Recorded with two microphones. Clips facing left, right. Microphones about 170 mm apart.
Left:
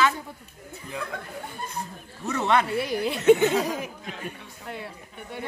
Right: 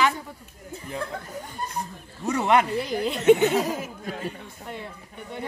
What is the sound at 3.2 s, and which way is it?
Speech, 15° right (ahead or behind).